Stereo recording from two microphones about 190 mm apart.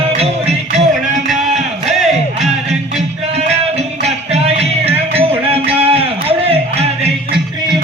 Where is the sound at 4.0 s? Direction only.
35° right (ahead or behind).